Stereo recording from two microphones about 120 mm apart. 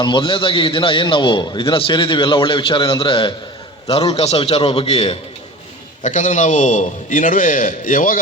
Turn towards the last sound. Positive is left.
turn(degrees=90)